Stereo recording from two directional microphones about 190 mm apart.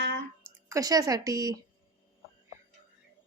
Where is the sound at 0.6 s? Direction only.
20° right (ahead or behind).